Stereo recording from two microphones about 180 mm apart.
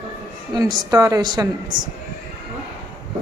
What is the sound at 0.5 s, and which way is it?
Speech, 20° right (ahead or behind).